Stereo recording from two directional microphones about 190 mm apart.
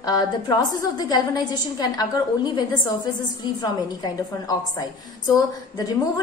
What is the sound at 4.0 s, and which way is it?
A woman's voice, 20° left (ahead or behind).